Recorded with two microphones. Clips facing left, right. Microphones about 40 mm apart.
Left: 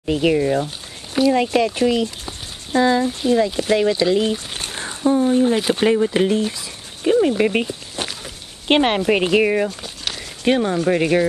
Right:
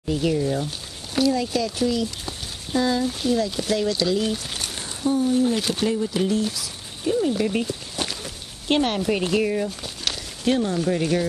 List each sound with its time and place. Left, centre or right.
0.0 s speech: left
0.6 s a sound: centre
1.3 s speech: left
6.0 s speech: left
7.1 s speech: left
7.6 s a sound: left
8.6 s speech: left
9.8 s a sound: centre
10.4 s speech: left